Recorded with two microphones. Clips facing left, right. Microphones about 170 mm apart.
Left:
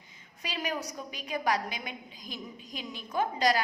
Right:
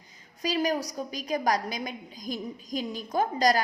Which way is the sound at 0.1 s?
40° right (ahead or behind).